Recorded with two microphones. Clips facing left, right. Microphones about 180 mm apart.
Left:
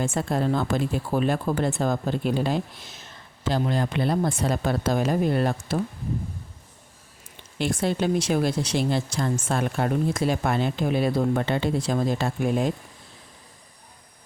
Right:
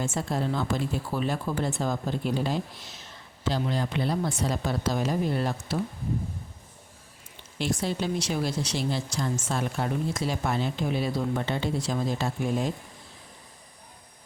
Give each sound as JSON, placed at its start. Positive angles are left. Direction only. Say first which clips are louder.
{"t": 0.0, "sound": "speech", "louder": "left 4 dB", "side_deg": 55}
{"t": 7.6, "sound": "speech", "louder": "left 4 dB", "side_deg": 55}